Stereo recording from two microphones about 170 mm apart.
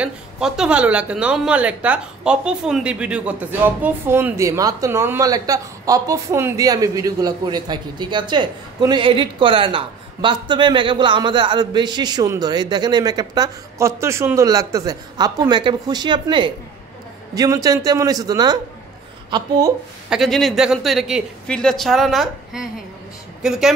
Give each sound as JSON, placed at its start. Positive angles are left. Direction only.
{"t": 0.0, "sound": "a woman's voice", "side_deg": -5}
{"t": 20.1, "sound": "speech", "side_deg": 0}